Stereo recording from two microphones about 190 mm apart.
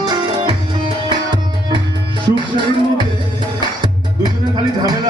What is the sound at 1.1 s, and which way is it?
Tabla, 25° right (ahead or behind).